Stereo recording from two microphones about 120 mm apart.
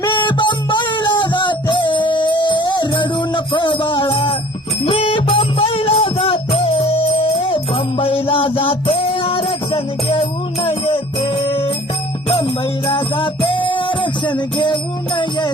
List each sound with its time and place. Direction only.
0.0 s music: 40° left (ahead or behind)
12.9 s music: 45° left (ahead or behind)